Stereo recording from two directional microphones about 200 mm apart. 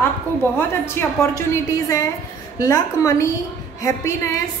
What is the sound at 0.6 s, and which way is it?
A woman's voice, 10° left (ahead or behind).